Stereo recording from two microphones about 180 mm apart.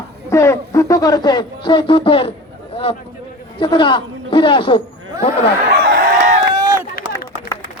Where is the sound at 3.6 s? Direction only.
25° left (ahead or behind).